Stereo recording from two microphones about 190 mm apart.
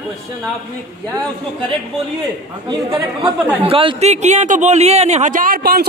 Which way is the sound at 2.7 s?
25° right (ahead or behind).